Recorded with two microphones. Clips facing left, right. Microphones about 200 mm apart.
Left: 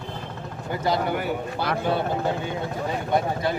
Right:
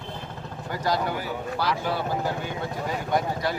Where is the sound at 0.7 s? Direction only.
25° left (ahead or behind).